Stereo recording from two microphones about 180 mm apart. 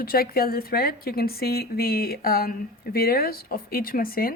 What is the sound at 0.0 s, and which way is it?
A woman's voice, 55° left (ahead or behind).